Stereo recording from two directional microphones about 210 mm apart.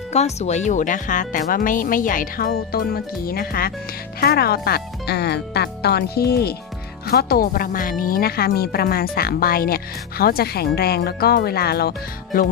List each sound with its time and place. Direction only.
0.1 s speech: 30° left (ahead or behind)